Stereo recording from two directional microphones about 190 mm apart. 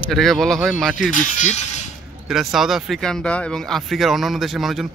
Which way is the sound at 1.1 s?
40° left (ahead or behind).